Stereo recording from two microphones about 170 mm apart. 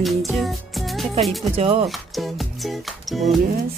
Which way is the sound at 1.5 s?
35° right (ahead or behind).